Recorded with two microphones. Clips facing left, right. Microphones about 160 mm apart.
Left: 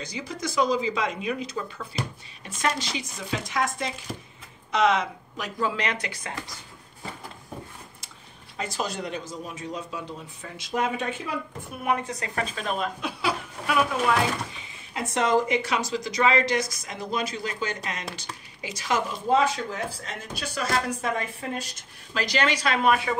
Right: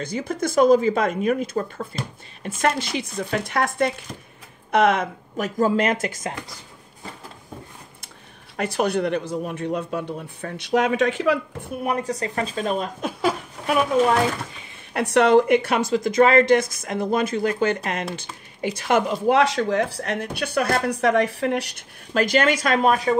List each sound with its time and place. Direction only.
0.0 s speech: 55° right (ahead or behind)
8.5 s speech: 60° right (ahead or behind); by 11.3 s 90° right
11.8 s speech: 35° right (ahead or behind)
15.0 s speech: 70° right (ahead or behind); by 23.1 s 40° right (ahead or behind)